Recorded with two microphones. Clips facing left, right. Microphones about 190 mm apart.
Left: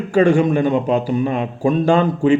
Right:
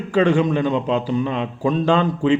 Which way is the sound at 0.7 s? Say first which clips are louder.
Left 3 dB; 50° left (ahead or behind).